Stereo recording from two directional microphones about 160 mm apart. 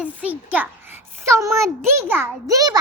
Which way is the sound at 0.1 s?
10° right (ahead or behind).